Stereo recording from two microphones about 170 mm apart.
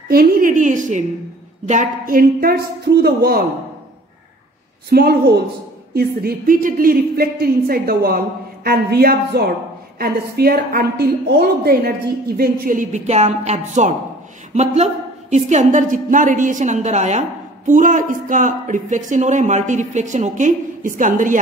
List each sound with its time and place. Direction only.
0.1 s a woman's voice: 60° right (ahead or behind)
4.9 s a woman's voice: 65° right (ahead or behind)